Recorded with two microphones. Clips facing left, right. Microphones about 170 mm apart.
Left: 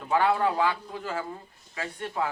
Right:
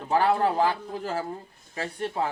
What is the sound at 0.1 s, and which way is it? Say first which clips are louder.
Speech: right 1 dB; 35° right (ahead or behind).